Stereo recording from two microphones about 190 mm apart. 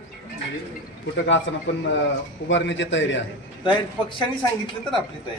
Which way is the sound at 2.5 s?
70° left (ahead or behind).